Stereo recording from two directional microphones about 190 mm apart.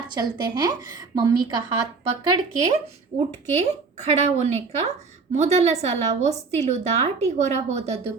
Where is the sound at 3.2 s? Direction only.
35° right (ahead or behind).